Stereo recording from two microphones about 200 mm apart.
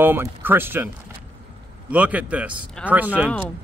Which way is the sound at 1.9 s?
5° right (ahead or behind).